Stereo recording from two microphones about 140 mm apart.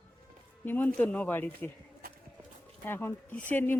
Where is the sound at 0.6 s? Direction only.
15° left (ahead or behind).